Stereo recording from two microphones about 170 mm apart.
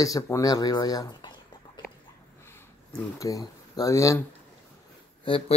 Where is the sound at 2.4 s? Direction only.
15° left (ahead or behind).